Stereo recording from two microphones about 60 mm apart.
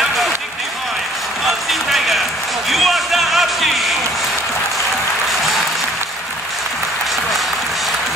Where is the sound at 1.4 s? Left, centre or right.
Centre.